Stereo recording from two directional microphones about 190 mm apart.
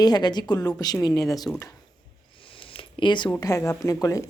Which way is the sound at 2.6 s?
30° left (ahead or behind).